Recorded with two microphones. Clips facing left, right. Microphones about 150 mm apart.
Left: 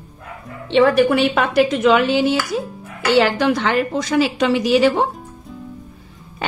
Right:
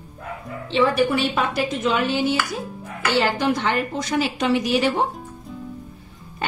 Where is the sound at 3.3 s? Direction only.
90° left.